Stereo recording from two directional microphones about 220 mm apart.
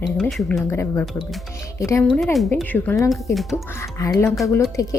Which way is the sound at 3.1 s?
Centre (ahead or behind).